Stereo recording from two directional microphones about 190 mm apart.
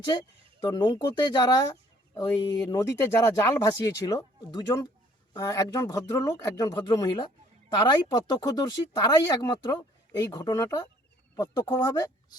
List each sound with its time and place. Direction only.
0.1 s speech: 20° left (ahead or behind)